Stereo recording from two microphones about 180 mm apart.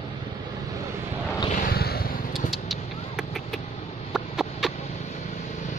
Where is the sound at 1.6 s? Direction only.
60° left (ahead or behind).